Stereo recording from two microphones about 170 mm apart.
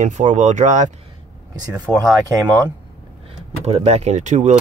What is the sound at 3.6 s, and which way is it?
Speech, 40° right (ahead or behind).